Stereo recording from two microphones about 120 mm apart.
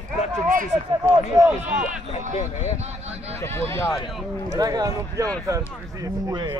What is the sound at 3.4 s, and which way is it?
Speech, 20° left (ahead or behind).